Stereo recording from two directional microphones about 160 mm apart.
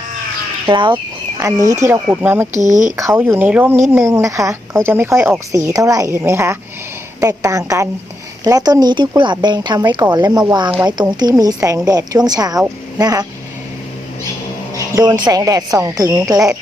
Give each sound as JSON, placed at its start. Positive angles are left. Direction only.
{"t": 0.7, "sound": "speech", "side_deg": -30}
{"t": 1.4, "sound": "speech", "side_deg": -20}
{"t": 2.5, "sound": "speech", "side_deg": -50}
{"t": 2.9, "sound": "speech", "side_deg": -20}
{"t": 3.2, "sound": "speech", "side_deg": -10}
{"t": 14.8, "sound": "speech", "side_deg": -25}